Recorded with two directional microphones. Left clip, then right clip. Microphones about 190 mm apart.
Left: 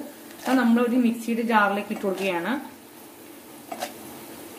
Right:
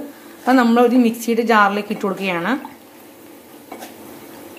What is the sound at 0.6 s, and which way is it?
A woman's voice, 30° right (ahead or behind).